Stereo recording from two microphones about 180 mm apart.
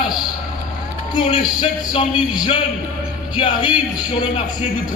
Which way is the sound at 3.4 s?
30° left (ahead or behind).